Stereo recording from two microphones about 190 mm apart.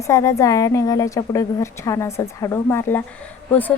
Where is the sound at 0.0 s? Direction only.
15° left (ahead or behind).